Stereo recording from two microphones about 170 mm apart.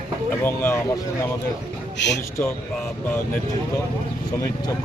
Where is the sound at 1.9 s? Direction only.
90° left.